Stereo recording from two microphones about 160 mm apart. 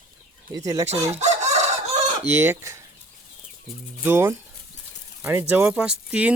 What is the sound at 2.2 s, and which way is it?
Speech, 15° right (ahead or behind).